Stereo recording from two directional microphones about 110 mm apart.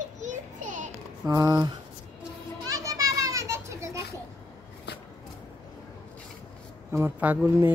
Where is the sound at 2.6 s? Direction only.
35° right (ahead or behind).